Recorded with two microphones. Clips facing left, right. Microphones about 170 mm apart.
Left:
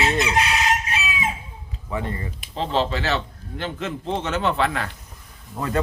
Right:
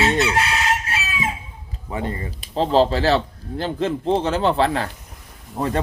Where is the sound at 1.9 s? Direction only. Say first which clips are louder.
Right 2 dB; 30° right (ahead or behind).